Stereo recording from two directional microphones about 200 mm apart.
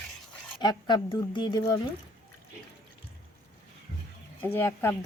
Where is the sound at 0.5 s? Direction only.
20° left (ahead or behind).